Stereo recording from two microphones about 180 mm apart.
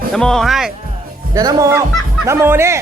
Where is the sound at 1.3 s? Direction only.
20° right (ahead or behind).